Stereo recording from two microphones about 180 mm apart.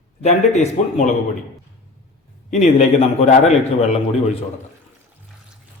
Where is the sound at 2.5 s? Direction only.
40° left (ahead or behind).